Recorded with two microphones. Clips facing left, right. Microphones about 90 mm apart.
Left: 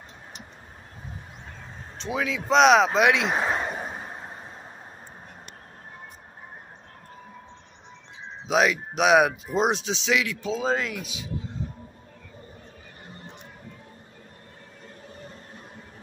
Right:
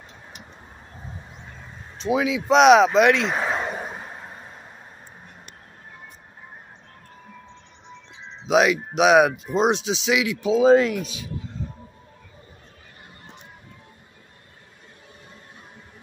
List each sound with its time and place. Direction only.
2.0 s speech: 10° right (ahead or behind)
3.0 s speech: 5° left (ahead or behind)
8.5 s speech: centre (ahead or behind)
11.0 s speech: 20° left (ahead or behind)